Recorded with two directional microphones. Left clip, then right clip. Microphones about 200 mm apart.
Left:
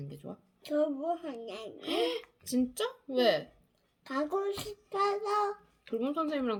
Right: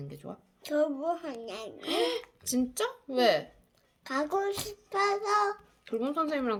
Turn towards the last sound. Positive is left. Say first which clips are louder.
# right 2 dB
turn(degrees=5)  # may be behind; listen again after turning